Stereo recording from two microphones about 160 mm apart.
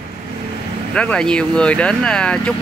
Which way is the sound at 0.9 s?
5° left (ahead or behind).